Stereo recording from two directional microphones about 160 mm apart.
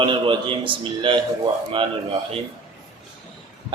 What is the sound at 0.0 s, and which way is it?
Speech, 30° right (ahead or behind).